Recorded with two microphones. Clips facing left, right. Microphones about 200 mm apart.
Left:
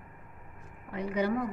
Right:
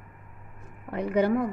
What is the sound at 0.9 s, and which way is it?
Speech, 55° right (ahead or behind).